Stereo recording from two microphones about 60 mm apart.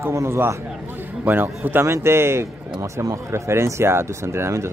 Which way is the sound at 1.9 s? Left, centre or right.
Right.